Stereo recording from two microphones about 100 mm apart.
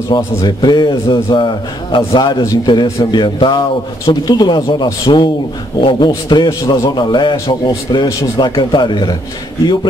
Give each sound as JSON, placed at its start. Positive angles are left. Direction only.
{"t": 0.4, "sound": "a man's voice", "side_deg": 45}